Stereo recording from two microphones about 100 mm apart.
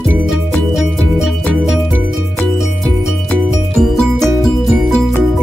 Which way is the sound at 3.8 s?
5° left (ahead or behind).